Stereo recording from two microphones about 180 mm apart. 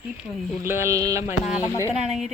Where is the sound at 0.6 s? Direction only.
15° right (ahead or behind).